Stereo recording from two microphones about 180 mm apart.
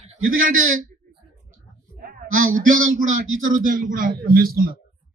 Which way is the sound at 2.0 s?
50° right (ahead or behind).